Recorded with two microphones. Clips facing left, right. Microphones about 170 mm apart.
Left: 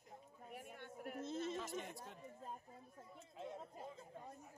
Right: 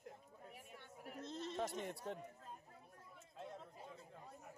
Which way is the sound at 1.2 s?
5° left (ahead or behind).